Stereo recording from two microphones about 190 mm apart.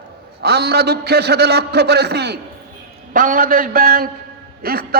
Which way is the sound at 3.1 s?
45° right (ahead or behind).